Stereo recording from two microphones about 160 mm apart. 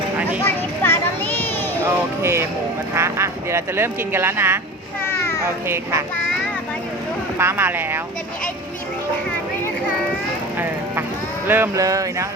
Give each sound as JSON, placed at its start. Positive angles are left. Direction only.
{"t": 0.4, "sound": "children playing", "side_deg": 15}
{"t": 1.8, "sound": "speech", "side_deg": -15}
{"t": 5.0, "sound": "a sound", "side_deg": 15}
{"t": 5.6, "sound": "speech", "side_deg": -15}
{"t": 7.3, "sound": "speech", "side_deg": -15}
{"t": 11.4, "sound": "speech", "side_deg": -15}